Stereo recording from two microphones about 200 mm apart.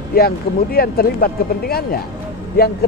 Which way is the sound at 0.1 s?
50° left (ahead or behind).